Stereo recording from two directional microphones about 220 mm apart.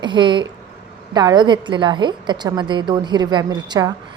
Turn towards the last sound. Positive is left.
turn(degrees=-20)  # may be behind; listen again after turning